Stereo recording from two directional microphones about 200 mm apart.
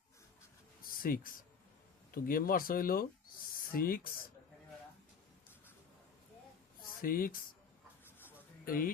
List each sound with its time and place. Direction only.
0.8 s a sound: 45° left (ahead or behind)
2.1 s speech: 45° left (ahead or behind)
7.0 s speech: 45° left (ahead or behind)
8.6 s speech: 45° left (ahead or behind)